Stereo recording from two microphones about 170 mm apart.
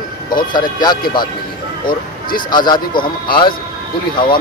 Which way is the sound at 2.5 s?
25° left (ahead or behind).